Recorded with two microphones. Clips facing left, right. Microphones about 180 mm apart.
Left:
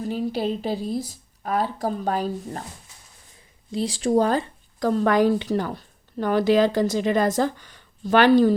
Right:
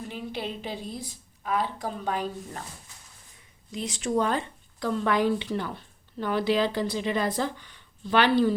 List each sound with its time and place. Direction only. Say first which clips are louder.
0.0 s a woman's voice: left 9 dB; 40° left (ahead or behind)
3.7 s speech: left 7 dB; 30° left (ahead or behind)